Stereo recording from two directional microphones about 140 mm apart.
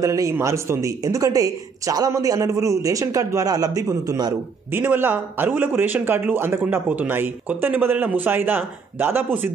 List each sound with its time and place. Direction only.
0.0 s speech: 25° right (ahead or behind)
4.7 s a man's voice: 15° right (ahead or behind)